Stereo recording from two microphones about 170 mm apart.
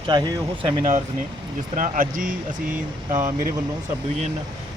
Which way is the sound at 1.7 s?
55° right (ahead or behind).